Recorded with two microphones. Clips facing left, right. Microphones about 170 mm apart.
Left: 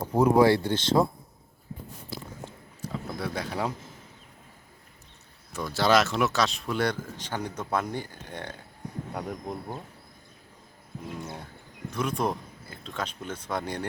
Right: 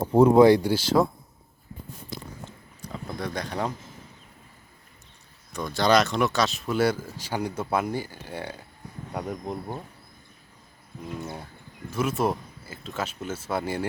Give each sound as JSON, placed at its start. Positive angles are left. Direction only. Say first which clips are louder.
{"t": 0.0, "sound": "speech", "louder": "right 4 dB", "side_deg": -25}
{"t": 0.4, "sound": "speech", "louder": "right 4 dB", "side_deg": -15}
{"t": 1.7, "sound": "a sound", "louder": "left 2 dB", "side_deg": 25}
{"t": 2.0, "sound": "a sound", "louder": "even", "side_deg": 5}
{"t": 5.5, "sound": "speech", "louder": "right 2 dB", "side_deg": 5}
{"t": 11.2, "sound": "speech", "louder": "right 2 dB", "side_deg": 0}